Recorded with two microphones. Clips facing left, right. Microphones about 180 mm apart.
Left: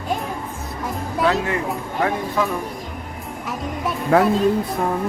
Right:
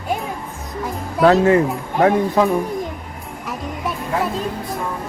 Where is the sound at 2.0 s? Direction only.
40° right (ahead or behind).